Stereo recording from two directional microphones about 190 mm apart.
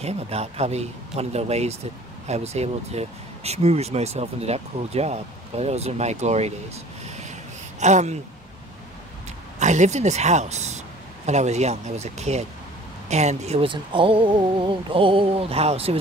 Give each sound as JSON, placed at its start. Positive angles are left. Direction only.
{"t": 0.0, "sound": "speech", "side_deg": -35}
{"t": 9.6, "sound": "speech", "side_deg": -40}